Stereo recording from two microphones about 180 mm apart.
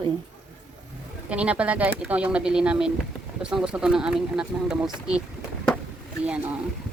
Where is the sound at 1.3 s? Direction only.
5° right (ahead or behind).